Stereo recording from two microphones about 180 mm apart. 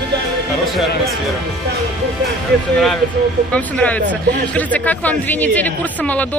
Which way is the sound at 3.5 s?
10° left (ahead or behind).